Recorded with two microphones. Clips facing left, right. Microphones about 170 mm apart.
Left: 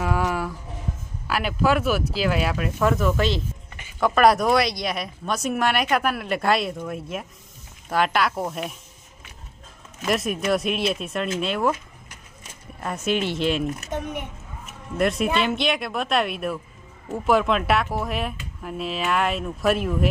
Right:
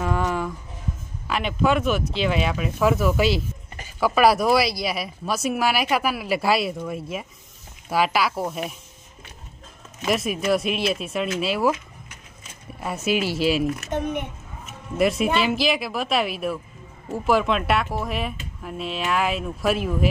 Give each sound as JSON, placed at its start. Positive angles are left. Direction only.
{"t": 0.0, "sound": "music", "side_deg": 5}
{"t": 1.2, "sound": "speech", "side_deg": 5}
{"t": 10.0, "sound": "speech", "side_deg": 0}
{"t": 12.8, "sound": "speech", "side_deg": -5}
{"t": 13.9, "sound": "a child's voice", "side_deg": -20}
{"t": 15.0, "sound": "speech", "side_deg": 0}